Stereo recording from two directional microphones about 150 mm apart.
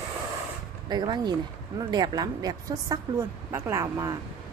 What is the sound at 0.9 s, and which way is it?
Speech, 30° right (ahead or behind).